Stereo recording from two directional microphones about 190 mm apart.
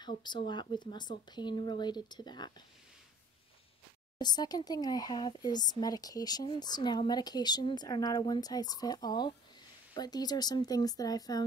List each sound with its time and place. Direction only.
0.2 s speech: 25° left (ahead or behind)
4.2 s speech: 20° left (ahead or behind)